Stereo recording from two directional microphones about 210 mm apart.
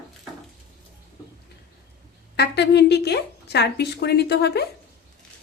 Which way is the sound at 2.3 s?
50° left (ahead or behind).